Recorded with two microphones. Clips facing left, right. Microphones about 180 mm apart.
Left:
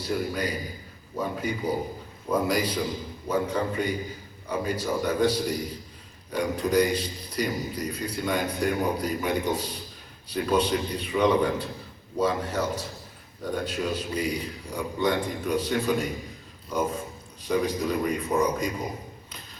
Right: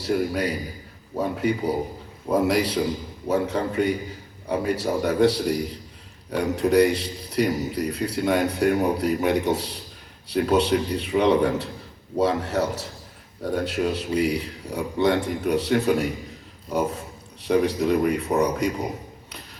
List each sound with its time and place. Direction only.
0.0 s a man's voice: 65° right (ahead or behind)
17.4 s a man's voice: 65° right (ahead or behind)